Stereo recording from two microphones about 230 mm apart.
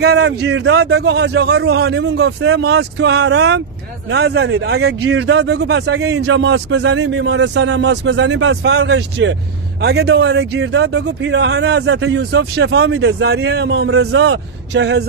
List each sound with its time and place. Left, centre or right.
0.0 s speech: right